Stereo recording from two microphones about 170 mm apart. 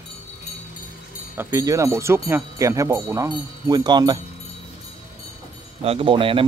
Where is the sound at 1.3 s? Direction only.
15° right (ahead or behind).